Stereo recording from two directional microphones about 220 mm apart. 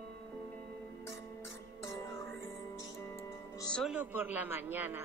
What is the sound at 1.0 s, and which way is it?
Music, 10° left (ahead or behind).